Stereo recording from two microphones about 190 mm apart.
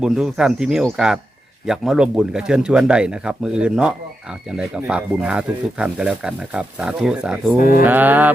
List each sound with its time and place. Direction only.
0.0 s speech: 5° right (ahead or behind)
7.6 s mantra: 50° left (ahead or behind)
7.9 s mantra: 10° right (ahead or behind)